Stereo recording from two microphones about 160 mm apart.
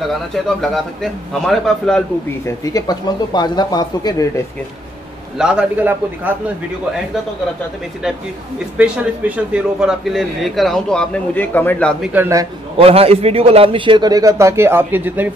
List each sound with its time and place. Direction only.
0.3 s a man's voice: centre (ahead or behind)
2.4 s speech: 20° left (ahead or behind)
5.4 s a man's voice: 5° right (ahead or behind)
9.5 s a man's voice: 5° right (ahead or behind)
12.1 s a man's voice: 15° right (ahead or behind)
12.7 s a man's voice: 35° right (ahead or behind); by 15.2 s 10° right (ahead or behind)